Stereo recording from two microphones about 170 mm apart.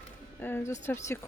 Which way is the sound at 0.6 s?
45° left (ahead or behind).